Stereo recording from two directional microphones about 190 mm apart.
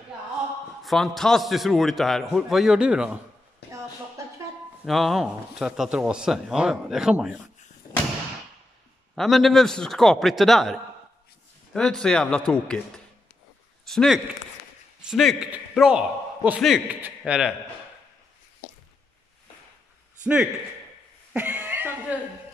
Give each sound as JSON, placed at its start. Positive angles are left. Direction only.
{"t": 0.8, "sound": "speech", "side_deg": 0}
{"t": 4.8, "sound": "speech", "side_deg": 0}
{"t": 7.8, "sound": "thump", "side_deg": 20}
{"t": 9.1, "sound": "a man's voice", "side_deg": 0}
{"t": 21.3, "sound": "chuckle", "side_deg": -5}